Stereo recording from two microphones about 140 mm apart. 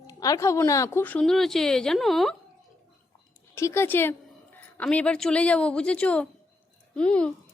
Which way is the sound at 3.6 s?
20° left (ahead or behind).